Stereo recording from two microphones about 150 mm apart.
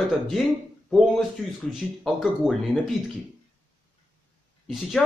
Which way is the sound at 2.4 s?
5° right (ahead or behind).